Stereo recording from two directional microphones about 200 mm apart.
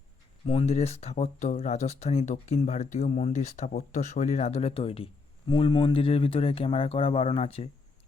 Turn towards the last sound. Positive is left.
turn(degrees=30)  # may be behind; listen again after turning